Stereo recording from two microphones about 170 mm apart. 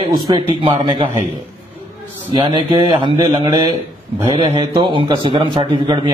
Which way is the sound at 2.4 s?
25° right (ahead or behind).